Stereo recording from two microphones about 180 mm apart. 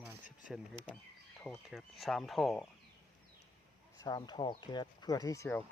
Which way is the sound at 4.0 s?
20° left (ahead or behind).